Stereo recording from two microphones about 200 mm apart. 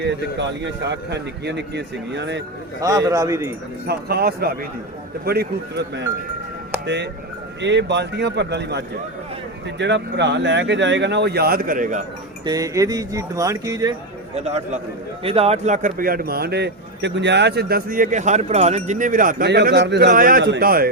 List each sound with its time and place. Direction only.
0.0 s speech: 60° right (ahead or behind)
2.8 s speech: 15° right (ahead or behind)
3.8 s speech: 50° right (ahead or behind)
6.8 s speech: 60° right (ahead or behind); by 12.0 s 40° right (ahead or behind)
12.5 s speech: 15° right (ahead or behind)
14.3 s a man's voice: 35° right (ahead or behind)
19.5 s speech: 55° right (ahead or behind)